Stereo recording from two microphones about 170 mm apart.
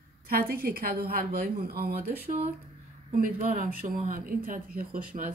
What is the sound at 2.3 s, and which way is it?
A woman's voice, 45° right (ahead or behind).